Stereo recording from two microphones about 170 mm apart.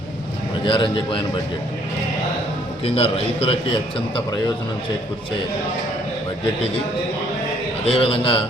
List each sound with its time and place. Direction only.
0.6 s a man's voice: 30° left (ahead or behind)
2.8 s a man's voice: 35° left (ahead or behind)
7.9 s a man's voice: 35° left (ahead or behind)